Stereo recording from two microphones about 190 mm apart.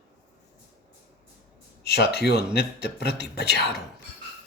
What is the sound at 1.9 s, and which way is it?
Speech, 60° left (ahead or behind).